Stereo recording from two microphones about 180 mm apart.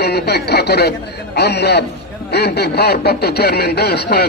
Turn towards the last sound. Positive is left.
turn(degrees=65)  # may be behind; listen again after turning